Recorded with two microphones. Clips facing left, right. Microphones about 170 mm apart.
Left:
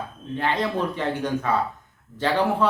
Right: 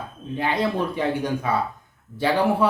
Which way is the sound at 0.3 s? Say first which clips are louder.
Right 1 dB; 10° right (ahead or behind).